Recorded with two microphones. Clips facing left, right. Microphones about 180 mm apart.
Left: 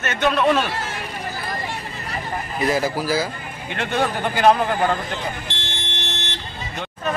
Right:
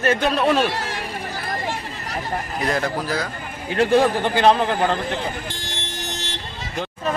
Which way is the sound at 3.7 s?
35° right (ahead or behind).